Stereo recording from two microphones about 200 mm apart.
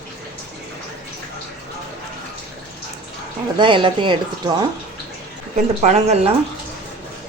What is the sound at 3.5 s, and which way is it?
A woman's voice, 25° right (ahead or behind).